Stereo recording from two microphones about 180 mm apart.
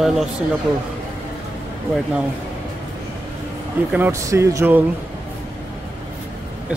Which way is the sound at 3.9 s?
15° right (ahead or behind).